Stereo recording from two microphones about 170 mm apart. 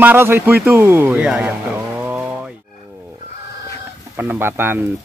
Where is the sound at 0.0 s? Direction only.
10° right (ahead or behind).